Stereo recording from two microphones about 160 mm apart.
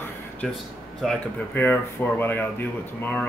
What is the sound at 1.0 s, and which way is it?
Speech, 10° left (ahead or behind).